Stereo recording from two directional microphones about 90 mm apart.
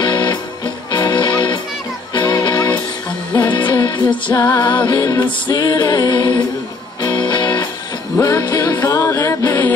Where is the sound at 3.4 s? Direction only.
65° left (ahead or behind).